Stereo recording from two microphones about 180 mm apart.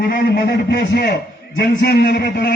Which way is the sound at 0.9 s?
60° left (ahead or behind).